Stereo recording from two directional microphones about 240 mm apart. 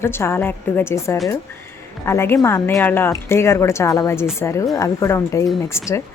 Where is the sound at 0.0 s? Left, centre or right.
Centre.